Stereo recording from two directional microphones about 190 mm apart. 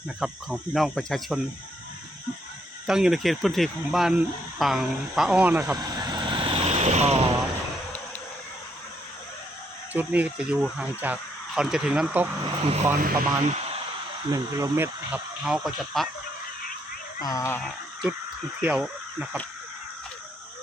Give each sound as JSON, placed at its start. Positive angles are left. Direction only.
{"t": 0.2, "sound": "speech", "side_deg": 0}
{"t": 2.8, "sound": "speech", "side_deg": -5}
{"t": 9.9, "sound": "speech", "side_deg": -10}
{"t": 12.6, "sound": "speech", "side_deg": -35}
{"t": 13.0, "sound": "speech", "side_deg": -45}
{"t": 14.3, "sound": "speech", "side_deg": -20}
{"t": 17.2, "sound": "a child's voice", "side_deg": 15}
{"t": 18.6, "sound": "speech", "side_deg": -5}